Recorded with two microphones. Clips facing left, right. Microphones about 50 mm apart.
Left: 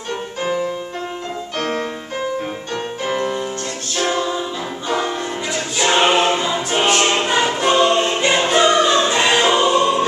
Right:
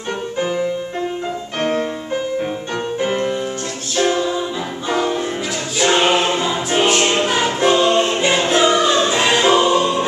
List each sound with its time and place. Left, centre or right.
1.6 s music: centre
3.0 s music: right
3.9 s music: centre
5.8 s choir: centre